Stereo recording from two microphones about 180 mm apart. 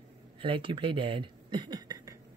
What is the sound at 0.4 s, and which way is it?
Speech, 30° right (ahead or behind).